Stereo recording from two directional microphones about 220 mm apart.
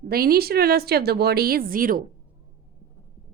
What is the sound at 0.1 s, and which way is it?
A woman's voice, 45° right (ahead or behind).